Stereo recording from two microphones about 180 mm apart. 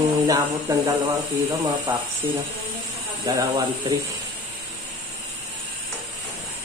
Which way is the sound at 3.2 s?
15° right (ahead or behind).